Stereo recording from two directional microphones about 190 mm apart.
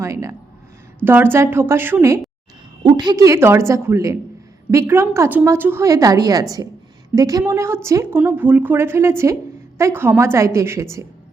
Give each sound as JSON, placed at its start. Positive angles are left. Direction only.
{"t": 0.0, "sound": "a woman's voice", "side_deg": -15}